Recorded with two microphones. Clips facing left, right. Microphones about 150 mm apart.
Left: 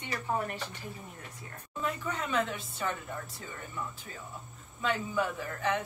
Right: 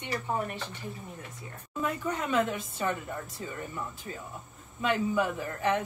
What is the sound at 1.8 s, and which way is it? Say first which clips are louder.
Speech: right 3 dB; 15° right (ahead or behind).